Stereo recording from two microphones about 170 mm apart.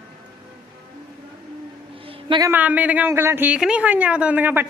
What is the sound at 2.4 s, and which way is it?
A woman's voice, 10° right (ahead or behind).